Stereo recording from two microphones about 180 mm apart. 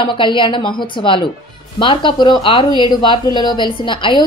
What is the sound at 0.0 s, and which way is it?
Speech, 25° left (ahead or behind).